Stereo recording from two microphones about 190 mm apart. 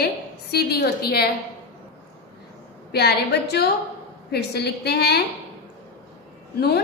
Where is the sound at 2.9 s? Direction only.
60° left (ahead or behind).